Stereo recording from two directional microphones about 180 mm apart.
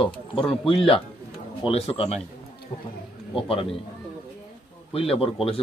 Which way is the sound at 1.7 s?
35° left (ahead or behind).